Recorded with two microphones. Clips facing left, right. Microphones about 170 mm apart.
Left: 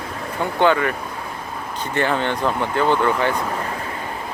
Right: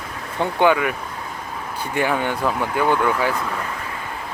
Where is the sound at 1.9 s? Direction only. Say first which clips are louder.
Left 1 dB; 10° right (ahead or behind).